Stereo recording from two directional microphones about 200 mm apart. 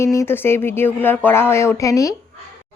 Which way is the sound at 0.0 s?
15° left (ahead or behind).